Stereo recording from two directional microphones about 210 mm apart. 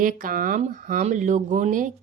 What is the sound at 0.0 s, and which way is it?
Speech, 40° right (ahead or behind).